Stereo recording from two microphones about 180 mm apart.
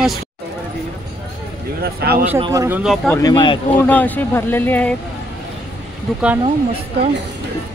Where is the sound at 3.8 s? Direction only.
10° left (ahead or behind).